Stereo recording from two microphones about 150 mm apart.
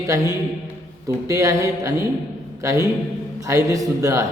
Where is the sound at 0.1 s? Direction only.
20° right (ahead or behind).